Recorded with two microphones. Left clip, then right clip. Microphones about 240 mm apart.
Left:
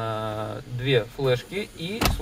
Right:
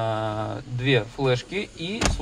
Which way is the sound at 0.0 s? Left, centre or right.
Right.